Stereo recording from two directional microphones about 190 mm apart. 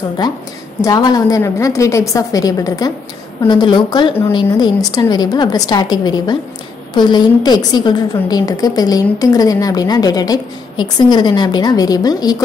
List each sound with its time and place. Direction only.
0.7 s a woman's voice: 20° left (ahead or behind)